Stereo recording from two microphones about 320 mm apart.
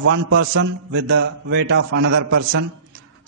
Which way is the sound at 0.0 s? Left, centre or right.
Right.